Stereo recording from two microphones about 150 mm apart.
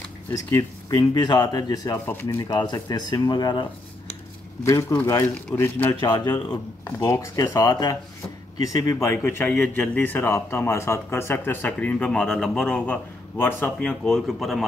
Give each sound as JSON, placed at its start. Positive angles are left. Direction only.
{"t": 0.3, "sound": "speech", "side_deg": 20}
{"t": 4.6, "sound": "speech", "side_deg": 20}
{"t": 6.0, "sound": "a man's voice", "side_deg": 30}